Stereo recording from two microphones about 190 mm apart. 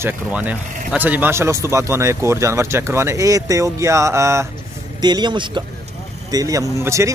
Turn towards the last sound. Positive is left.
turn(degrees=-15)  # may be behind; listen again after turning